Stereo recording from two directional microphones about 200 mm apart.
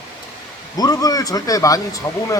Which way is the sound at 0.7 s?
20° left (ahead or behind).